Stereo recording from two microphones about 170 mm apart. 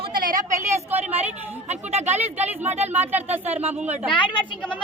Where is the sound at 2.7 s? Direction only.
40° right (ahead or behind).